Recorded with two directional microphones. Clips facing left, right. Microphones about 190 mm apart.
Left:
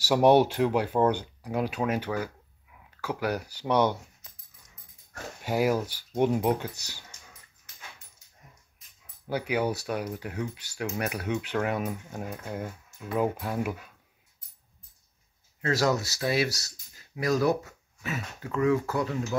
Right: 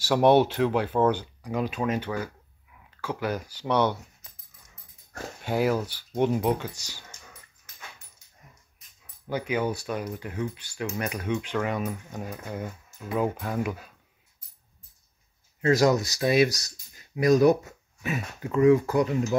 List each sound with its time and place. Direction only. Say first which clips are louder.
0.0 s speech: even; 10° left (ahead or behind)
5.4 s speech: right 1 dB; 10° left (ahead or behind)
6.7 s speech: right 1 dB; 10° right (ahead or behind)
9.3 s speech: even; 10° left (ahead or behind)
15.6 s speech: right 5 dB; 15° right (ahead or behind)